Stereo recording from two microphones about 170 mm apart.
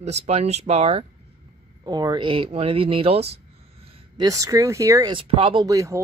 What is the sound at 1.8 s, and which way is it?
Speech, 25° right (ahead or behind).